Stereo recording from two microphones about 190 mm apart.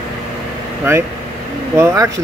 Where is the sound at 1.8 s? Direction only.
15° right (ahead or behind).